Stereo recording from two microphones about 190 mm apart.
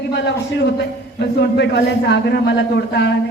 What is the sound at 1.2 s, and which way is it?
A man's voice, 65° left (ahead or behind).